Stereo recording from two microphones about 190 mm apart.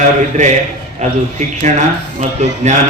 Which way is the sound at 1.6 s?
40° right (ahead or behind).